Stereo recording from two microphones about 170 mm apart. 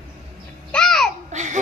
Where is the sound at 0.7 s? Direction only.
5° left (ahead or behind).